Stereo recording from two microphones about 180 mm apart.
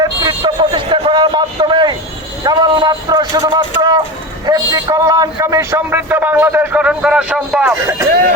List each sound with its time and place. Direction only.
0.0 s a sound: 20° right (ahead or behind)
2.4 s a man's voice: 20° right (ahead or behind); by 7.6 s 5° right (ahead or behind)
7.6 s a man's voice: 15° right (ahead or behind)